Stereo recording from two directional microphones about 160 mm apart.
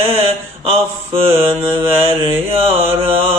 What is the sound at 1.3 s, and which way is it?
Mantra, 35° right (ahead or behind).